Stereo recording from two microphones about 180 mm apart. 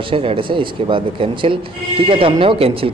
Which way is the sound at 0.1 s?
30° right (ahead or behind).